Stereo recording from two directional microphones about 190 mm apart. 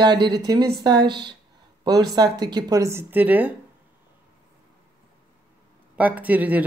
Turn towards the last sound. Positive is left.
turn(degrees=-10)  # may be behind; listen again after turning